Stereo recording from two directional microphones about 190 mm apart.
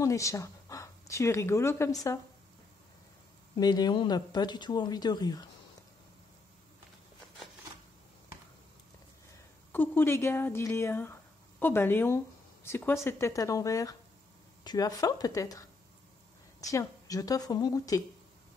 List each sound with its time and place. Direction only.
0.0 s speech: 15° left (ahead or behind)
3.5 s speech: 20° left (ahead or behind)
9.7 s speech: 10° left (ahead or behind)
16.6 s speech: 20° left (ahead or behind)